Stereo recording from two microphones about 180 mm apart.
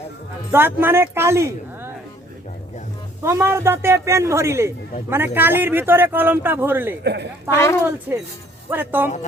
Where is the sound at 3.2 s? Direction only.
15° right (ahead or behind).